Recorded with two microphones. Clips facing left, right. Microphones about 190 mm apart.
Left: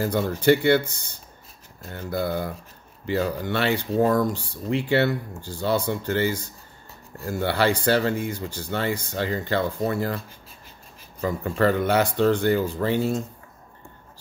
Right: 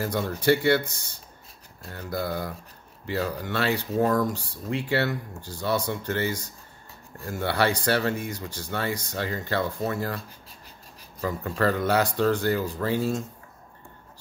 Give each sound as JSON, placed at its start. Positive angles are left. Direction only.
{"t": 0.0, "sound": "speech", "side_deg": 30}
{"t": 1.9, "sound": "speech", "side_deg": 25}